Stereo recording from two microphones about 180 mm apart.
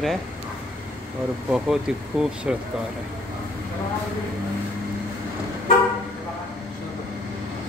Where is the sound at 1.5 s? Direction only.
5° right (ahead or behind).